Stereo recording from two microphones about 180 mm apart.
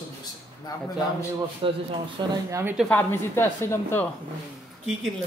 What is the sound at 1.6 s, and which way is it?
Speech, 30° right (ahead or behind).